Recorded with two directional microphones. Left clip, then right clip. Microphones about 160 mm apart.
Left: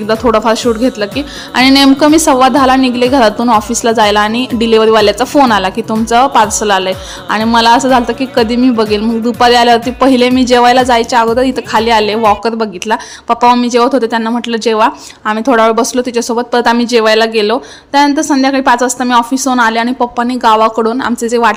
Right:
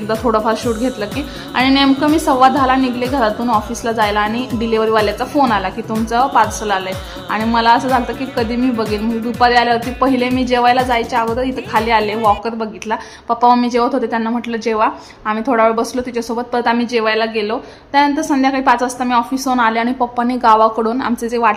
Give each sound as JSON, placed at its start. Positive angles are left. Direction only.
{"t": 0.1, "sound": "a woman's voice", "side_deg": 25}